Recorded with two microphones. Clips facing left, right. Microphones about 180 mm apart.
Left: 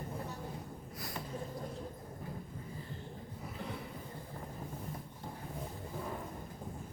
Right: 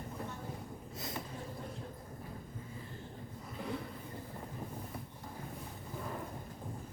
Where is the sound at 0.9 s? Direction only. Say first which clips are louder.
Right 2 dB; 20° right (ahead or behind).